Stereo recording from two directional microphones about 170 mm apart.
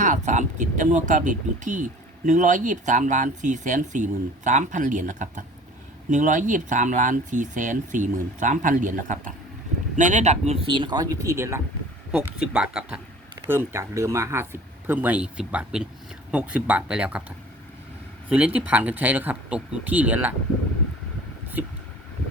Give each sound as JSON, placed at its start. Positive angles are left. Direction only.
{"t": 0.0, "sound": "speech", "side_deg": -45}
{"t": 12.1, "sound": "speech", "side_deg": -5}